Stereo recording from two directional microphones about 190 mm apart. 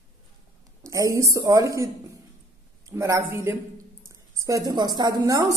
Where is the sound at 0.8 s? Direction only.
15° right (ahead or behind).